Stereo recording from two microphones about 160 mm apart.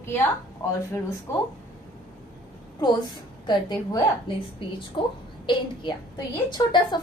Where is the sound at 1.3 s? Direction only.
15° left (ahead or behind).